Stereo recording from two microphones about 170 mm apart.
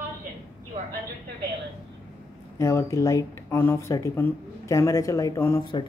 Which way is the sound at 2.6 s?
15° left (ahead or behind).